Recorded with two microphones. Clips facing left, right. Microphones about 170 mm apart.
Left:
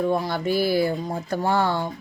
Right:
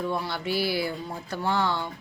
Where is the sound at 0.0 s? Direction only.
45° left (ahead or behind).